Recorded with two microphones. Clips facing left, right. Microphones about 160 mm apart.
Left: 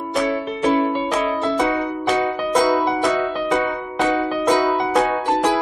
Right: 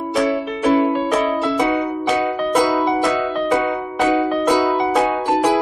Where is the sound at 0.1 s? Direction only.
5° right (ahead or behind).